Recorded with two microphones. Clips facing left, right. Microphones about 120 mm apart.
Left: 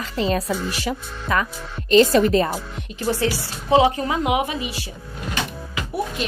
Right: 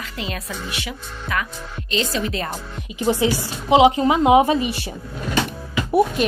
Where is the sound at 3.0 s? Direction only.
15° right (ahead or behind); by 4.7 s 35° right (ahead or behind).